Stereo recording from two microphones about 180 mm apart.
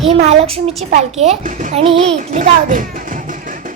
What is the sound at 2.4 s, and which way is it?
Music, 45° right (ahead or behind).